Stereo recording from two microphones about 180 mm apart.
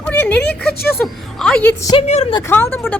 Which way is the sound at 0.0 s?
10° left (ahead or behind).